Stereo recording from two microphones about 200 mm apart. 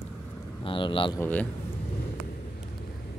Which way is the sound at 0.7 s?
25° left (ahead or behind).